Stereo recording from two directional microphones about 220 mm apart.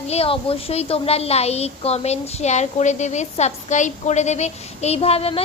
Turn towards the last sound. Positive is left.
turn(degrees=25)  # may be behind; listen again after turning